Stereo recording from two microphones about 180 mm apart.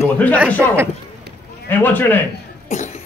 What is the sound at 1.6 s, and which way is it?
Speech, 10° left (ahead or behind).